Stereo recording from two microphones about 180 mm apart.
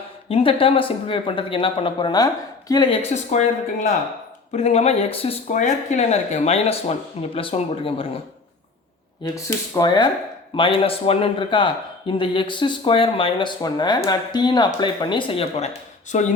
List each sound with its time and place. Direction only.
0.3 s a man's voice: 30° left (ahead or behind)
9.2 s a man's voice: 20° left (ahead or behind)
16.1 s speech: 40° left (ahead or behind)